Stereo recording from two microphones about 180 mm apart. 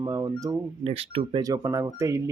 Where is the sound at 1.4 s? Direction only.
20° right (ahead or behind).